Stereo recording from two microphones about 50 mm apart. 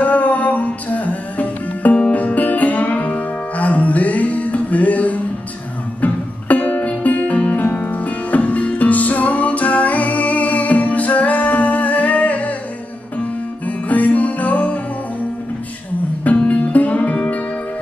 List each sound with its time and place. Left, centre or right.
0.0 s music: left
13.7 s music: left
16.3 s music: left